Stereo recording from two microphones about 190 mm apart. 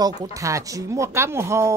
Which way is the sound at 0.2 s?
15° right (ahead or behind).